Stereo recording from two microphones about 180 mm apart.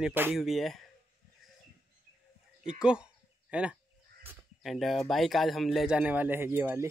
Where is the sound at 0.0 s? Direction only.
10° right (ahead or behind).